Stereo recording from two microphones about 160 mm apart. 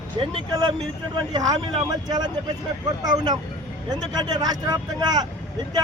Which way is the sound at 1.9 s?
25° right (ahead or behind).